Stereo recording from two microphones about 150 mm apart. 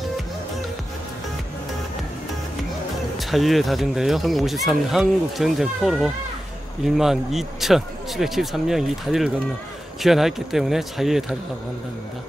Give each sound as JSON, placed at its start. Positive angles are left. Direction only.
{"t": 3.2, "sound": "speech", "side_deg": 0}